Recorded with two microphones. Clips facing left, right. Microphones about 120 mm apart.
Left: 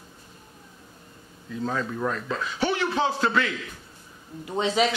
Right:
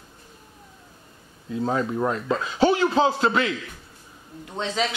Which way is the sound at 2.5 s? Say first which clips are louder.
Right 7 dB; 40° right (ahead or behind).